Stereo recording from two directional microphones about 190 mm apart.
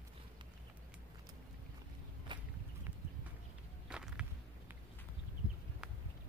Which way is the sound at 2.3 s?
25° right (ahead or behind).